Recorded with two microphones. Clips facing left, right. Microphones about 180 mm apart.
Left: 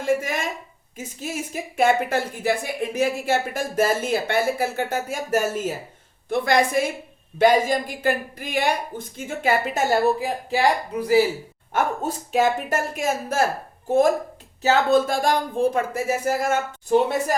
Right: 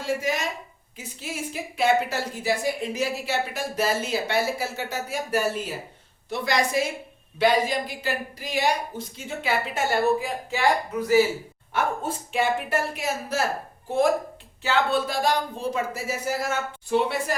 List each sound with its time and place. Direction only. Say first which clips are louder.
0.0 s a woman's voice: left 3 dB; 50° left (ahead or behind); by 10.7 s 35° left (ahead or behind)
11.7 s a woman's voice: left 3 dB; 40° left (ahead or behind)